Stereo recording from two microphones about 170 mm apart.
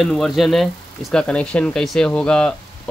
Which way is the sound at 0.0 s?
Centre (ahead or behind).